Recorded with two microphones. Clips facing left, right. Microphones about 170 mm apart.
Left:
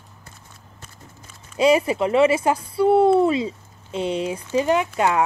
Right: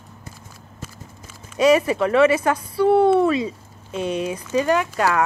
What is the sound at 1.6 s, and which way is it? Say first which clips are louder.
A woman's voice: right 1 dB; 25° left (ahead or behind).